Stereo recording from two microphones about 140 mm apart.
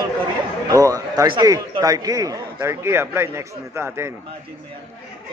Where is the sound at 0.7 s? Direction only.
25° right (ahead or behind).